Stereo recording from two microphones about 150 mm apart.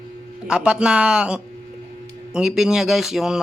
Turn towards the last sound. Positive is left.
turn(degrees=-5)  # may be behind; listen again after turning